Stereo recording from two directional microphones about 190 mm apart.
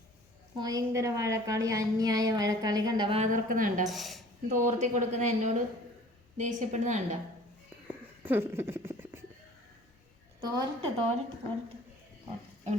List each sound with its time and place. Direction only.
0.6 s a woman's voice: 20° right (ahead or behind)
3.2 s speech: 45° right (ahead or behind)
3.8 s speech: centre (ahead or behind)
4.4 s a woman's voice: 40° right (ahead or behind)
7.9 s a sound: 10° right (ahead or behind)
10.4 s a woman's voice: 20° right (ahead or behind)